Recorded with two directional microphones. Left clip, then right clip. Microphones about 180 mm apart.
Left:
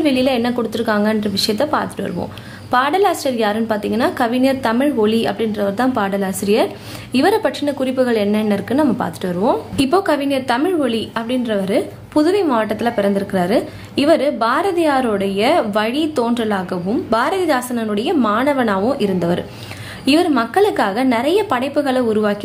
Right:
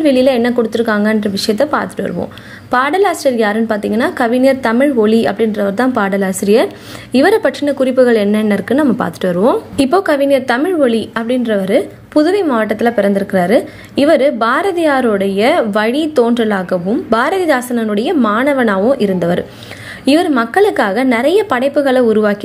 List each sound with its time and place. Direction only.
0.0 s a woman's voice: 20° right (ahead or behind)